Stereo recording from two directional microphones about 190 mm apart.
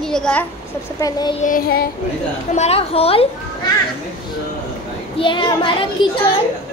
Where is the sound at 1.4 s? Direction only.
45° left (ahead or behind).